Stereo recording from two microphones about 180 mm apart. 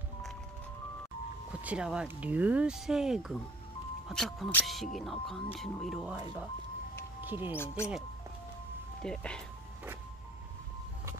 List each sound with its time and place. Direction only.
1.5 s speech: 5° right (ahead or behind)
7.5 s speech: 15° left (ahead or behind)
9.0 s speech: 5° left (ahead or behind)